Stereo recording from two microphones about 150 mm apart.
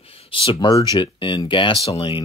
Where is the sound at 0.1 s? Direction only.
35° left (ahead or behind).